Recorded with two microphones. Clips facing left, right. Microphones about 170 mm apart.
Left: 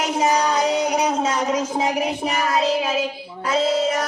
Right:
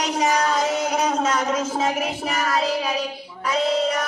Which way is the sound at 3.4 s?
30° left (ahead or behind).